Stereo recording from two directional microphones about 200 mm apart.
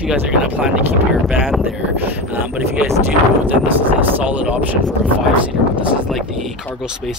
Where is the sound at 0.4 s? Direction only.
5° right (ahead or behind).